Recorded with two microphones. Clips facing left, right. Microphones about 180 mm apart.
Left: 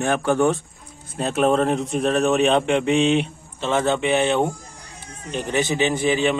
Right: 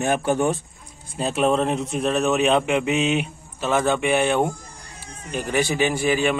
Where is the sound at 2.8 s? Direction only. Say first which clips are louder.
Left 3 dB; 30° left (ahead or behind).